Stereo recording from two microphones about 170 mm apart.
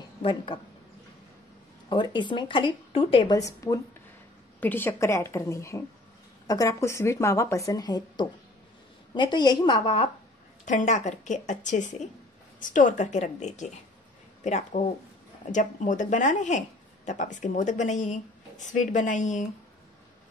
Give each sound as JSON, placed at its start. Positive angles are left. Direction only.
{"t": 0.2, "sound": "a woman's voice", "side_deg": 30}
{"t": 1.9, "sound": "a woman's voice", "side_deg": 30}
{"t": 3.3, "sound": "a woman's voice", "side_deg": 20}
{"t": 10.6, "sound": "speech", "side_deg": 45}